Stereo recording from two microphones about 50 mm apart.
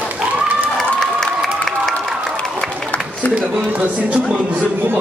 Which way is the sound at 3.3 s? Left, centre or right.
Right.